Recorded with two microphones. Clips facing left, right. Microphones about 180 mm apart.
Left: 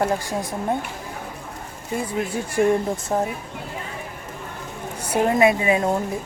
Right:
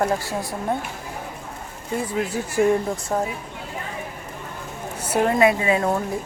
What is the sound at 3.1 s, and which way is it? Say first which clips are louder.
Speech: left 1 dB; 25° left (ahead or behind).